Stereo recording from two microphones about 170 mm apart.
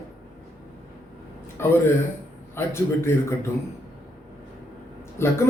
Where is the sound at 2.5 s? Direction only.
15° left (ahead or behind).